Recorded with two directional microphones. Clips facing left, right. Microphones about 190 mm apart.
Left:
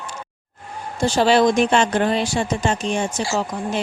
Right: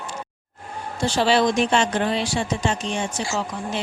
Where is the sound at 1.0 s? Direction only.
45° left (ahead or behind).